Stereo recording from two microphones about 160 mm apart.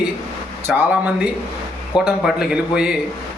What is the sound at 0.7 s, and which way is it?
Speech, 10° right (ahead or behind).